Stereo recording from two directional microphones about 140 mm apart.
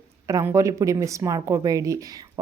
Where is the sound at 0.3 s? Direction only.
20° right (ahead or behind).